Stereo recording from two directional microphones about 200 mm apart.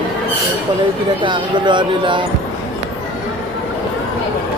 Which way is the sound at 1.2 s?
25° right (ahead or behind).